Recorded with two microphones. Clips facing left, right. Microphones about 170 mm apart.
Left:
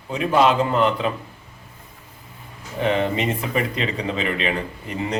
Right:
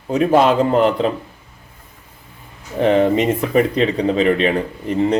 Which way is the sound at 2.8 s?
40° right (ahead or behind).